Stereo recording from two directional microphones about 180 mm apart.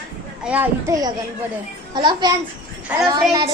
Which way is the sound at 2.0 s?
25° right (ahead or behind).